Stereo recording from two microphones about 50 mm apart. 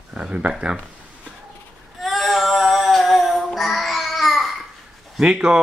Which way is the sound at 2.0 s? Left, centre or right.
Centre.